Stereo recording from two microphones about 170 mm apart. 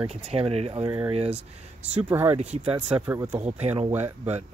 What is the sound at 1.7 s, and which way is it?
Speech, 10° right (ahead or behind).